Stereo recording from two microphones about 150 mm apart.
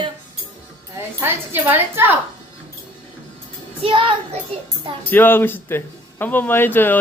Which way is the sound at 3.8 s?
35° right (ahead or behind).